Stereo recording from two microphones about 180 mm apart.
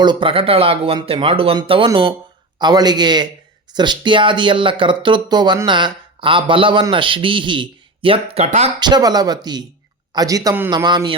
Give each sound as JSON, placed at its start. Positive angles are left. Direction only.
{"t": 0.0, "sound": "speech", "side_deg": -25}
{"t": 8.8, "sound": "speech", "side_deg": -20}